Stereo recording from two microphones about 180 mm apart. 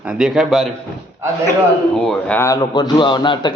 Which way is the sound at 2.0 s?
10° left (ahead or behind).